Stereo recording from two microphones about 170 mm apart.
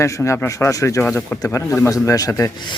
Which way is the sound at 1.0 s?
10° left (ahead or behind).